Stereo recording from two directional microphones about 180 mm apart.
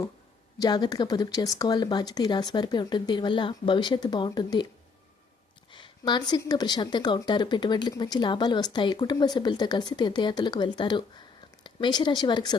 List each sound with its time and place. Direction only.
0.6 s speech: 25° left (ahead or behind)
5.7 s speech: 25° left (ahead or behind)